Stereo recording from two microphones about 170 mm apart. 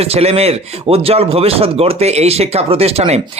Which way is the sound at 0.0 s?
35° right (ahead or behind).